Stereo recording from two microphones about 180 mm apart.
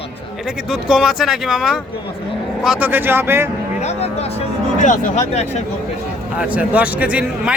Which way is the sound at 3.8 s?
35° left (ahead or behind).